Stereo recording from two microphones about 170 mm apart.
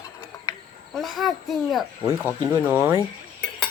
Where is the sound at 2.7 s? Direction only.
15° right (ahead or behind).